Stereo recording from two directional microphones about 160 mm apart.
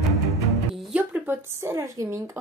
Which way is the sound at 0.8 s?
10° right (ahead or behind).